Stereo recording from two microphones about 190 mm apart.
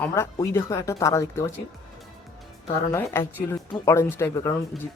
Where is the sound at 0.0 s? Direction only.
15° left (ahead or behind).